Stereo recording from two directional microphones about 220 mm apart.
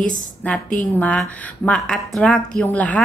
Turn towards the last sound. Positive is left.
turn(degrees=5)  # may be behind; listen again after turning